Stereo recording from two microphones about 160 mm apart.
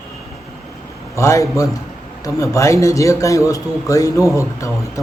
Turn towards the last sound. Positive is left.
turn(degrees=20)  # may be behind; listen again after turning